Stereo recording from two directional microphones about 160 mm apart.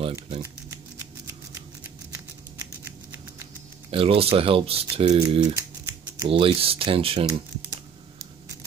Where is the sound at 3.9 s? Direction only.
35° right (ahead or behind).